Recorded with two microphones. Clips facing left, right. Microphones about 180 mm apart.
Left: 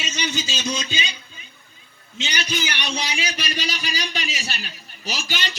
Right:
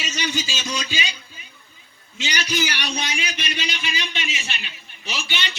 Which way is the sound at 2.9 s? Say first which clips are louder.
Left 1 dB; 30° left (ahead or behind).